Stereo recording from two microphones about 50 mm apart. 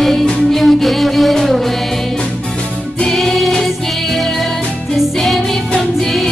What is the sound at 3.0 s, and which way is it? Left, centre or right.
Music, centre.